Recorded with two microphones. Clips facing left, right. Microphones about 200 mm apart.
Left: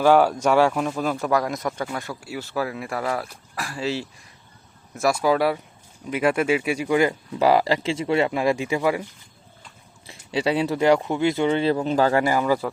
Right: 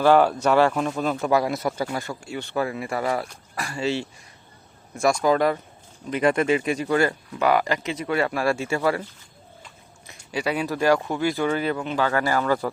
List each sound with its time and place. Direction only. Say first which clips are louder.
0.0 s speech: even; 10° left (ahead or behind)
7.3 s speech: left 3 dB; 30° left (ahead or behind); by 9.0 s 15° left (ahead or behind)
10.1 s speech: left 3 dB; 30° left (ahead or behind)
12.2 s speech: left 2 dB; 10° left (ahead or behind)